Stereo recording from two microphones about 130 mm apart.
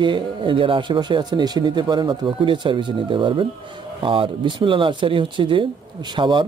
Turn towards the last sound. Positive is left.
turn(degrees=-35)  # may be behind; listen again after turning